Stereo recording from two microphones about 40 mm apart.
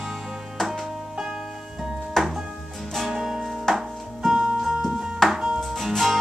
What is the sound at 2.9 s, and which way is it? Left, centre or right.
Music, centre.